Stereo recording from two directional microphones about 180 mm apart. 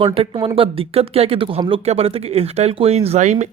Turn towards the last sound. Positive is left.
turn(degrees=-40)  # may be behind; listen again after turning